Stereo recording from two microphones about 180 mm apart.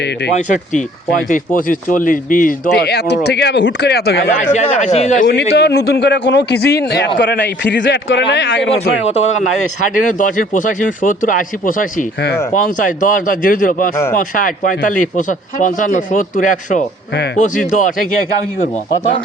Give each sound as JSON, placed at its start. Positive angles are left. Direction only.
{"t": 0.3, "sound": "speech", "side_deg": 45}
{"t": 4.5, "sound": "speech", "side_deg": 35}
{"t": 5.2, "sound": "a man's voice", "side_deg": 70}
{"t": 7.2, "sound": "speech", "side_deg": 75}
{"t": 9.0, "sound": "speech", "side_deg": 35}